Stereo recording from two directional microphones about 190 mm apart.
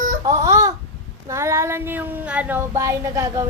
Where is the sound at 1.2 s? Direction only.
15° right (ahead or behind).